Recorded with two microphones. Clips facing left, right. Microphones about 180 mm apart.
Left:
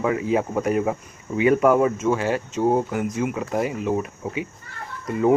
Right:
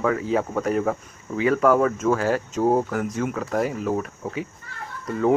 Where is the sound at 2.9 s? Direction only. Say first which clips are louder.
Left 1 dB; 10° left (ahead or behind).